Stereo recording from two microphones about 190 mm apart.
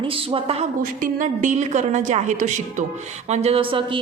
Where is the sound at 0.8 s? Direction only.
45° right (ahead or behind).